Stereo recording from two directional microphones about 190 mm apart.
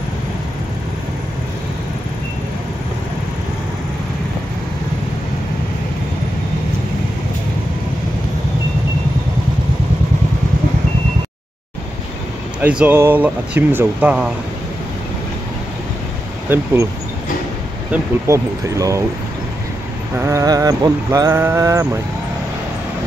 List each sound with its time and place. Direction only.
12.6 s speech: 5° right (ahead or behind)
17.9 s speech: 15° right (ahead or behind)
20.2 s speech: 15° right (ahead or behind)